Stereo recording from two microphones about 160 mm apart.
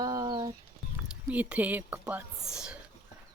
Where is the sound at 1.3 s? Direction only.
10° right (ahead or behind).